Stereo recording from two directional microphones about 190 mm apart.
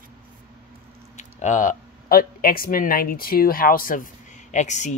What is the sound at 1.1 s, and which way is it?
Speech, 40° left (ahead or behind).